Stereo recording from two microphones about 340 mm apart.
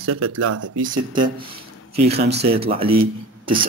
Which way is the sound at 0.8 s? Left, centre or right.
Centre.